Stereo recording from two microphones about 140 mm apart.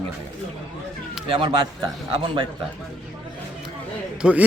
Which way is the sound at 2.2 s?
35° right (ahead or behind).